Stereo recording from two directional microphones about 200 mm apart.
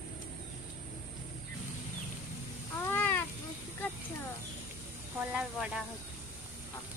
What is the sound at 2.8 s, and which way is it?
Cat, 10° left (ahead or behind).